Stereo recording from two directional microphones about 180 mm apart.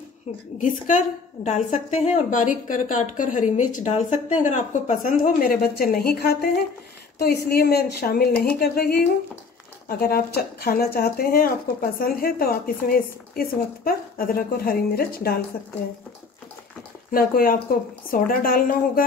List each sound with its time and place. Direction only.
0.6 s a woman's voice: 45° left (ahead or behind)
17.1 s a woman's voice: 55° left (ahead or behind)